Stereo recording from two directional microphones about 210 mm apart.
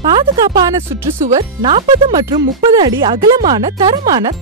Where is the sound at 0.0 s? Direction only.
20° right (ahead or behind).